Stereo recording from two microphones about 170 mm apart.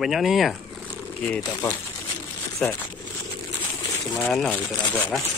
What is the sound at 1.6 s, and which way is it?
Speech, 20° left (ahead or behind).